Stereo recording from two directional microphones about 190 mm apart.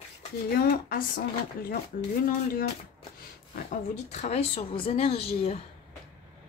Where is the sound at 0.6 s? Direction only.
50° left (ahead or behind).